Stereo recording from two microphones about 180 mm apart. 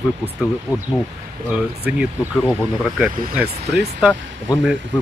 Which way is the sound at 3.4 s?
65° right (ahead or behind).